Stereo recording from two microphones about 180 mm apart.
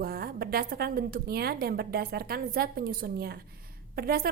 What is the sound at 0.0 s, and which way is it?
Speech, 60° right (ahead or behind).